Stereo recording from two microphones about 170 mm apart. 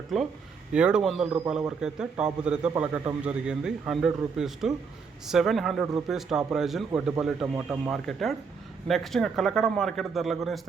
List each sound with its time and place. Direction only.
0.1 s a man's voice: centre (ahead or behind)